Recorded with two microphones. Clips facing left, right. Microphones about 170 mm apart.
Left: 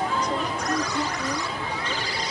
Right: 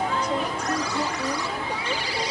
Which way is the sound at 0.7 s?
10° right (ahead or behind).